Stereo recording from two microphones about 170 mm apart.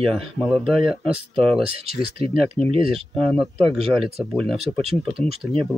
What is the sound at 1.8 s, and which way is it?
Speech, 35° right (ahead or behind).